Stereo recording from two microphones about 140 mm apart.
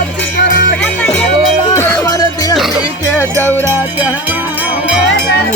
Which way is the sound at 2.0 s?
25° left (ahead or behind).